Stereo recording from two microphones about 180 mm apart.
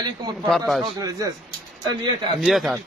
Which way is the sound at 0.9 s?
20° right (ahead or behind).